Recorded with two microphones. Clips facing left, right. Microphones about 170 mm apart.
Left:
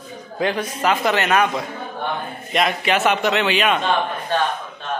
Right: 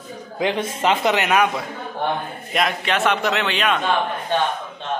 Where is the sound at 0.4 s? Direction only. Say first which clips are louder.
Even; 20° right (ahead or behind).